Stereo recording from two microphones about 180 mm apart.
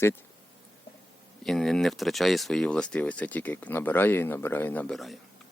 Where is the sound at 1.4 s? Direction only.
Centre (ahead or behind).